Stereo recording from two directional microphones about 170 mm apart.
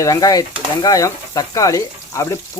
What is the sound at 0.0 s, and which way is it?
Speech, 20° left (ahead or behind).